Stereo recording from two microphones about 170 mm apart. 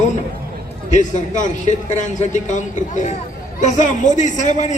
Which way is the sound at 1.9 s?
45° left (ahead or behind).